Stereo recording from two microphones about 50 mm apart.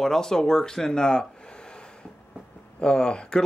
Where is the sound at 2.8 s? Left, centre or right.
Centre.